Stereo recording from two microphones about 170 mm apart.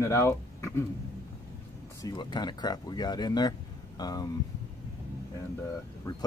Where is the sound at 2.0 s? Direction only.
25° left (ahead or behind).